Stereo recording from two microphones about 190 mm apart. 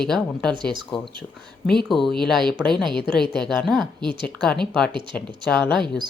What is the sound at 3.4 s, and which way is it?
Speech, centre (ahead or behind).